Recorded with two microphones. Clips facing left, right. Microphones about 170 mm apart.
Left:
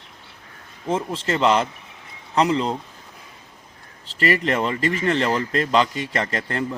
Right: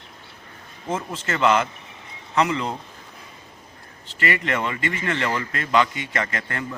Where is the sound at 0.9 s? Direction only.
30° left (ahead or behind).